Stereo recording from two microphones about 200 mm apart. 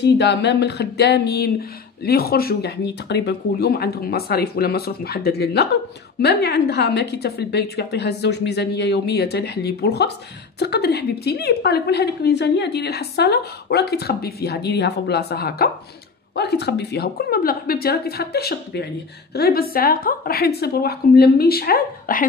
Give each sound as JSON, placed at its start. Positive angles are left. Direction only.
{"t": 0.0, "sound": "a woman's voice", "side_deg": 60}